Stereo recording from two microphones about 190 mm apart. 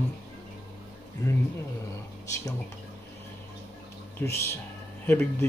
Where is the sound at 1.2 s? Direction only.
15° left (ahead or behind).